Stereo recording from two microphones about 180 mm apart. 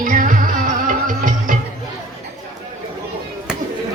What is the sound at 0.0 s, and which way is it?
Music, 50° right (ahead or behind).